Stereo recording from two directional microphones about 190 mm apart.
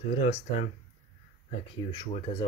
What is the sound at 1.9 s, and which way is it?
Speech, 25° left (ahead or behind).